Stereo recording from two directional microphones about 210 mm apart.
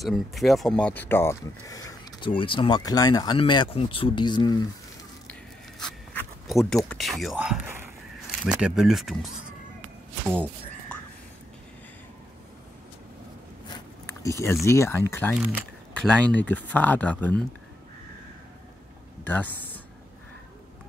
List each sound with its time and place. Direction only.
0.0 s speech: centre (ahead or behind); by 4.6 s 20° left (ahead or behind)
5.8 s speech: centre (ahead or behind)
10.9 s whispering: 5° left (ahead or behind)
13.7 s speech: 15° left (ahead or behind)
15.3 s speech: 10° right (ahead or behind)
15.9 s speech: 5° left (ahead or behind)
19.2 s speech: 5° left (ahead or behind)